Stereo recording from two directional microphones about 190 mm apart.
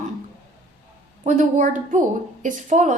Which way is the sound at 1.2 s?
40° right (ahead or behind).